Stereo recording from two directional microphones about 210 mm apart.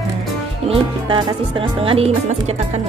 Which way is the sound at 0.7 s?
25° right (ahead or behind).